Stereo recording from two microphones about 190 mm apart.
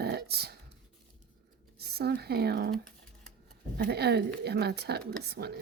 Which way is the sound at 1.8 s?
55° right (ahead or behind).